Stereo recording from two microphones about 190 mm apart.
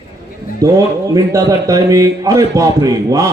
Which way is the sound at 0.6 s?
15° right (ahead or behind).